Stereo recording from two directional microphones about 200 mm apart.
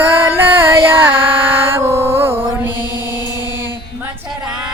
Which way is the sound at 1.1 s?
25° right (ahead or behind).